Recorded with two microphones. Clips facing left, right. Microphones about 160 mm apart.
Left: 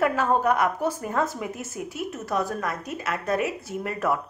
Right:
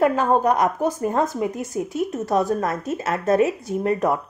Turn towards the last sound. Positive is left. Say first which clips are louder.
# right 6 dB
turn(degrees=-20)  # may be behind; listen again after turning